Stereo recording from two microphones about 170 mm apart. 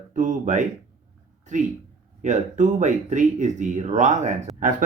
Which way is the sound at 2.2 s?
45° right (ahead or behind).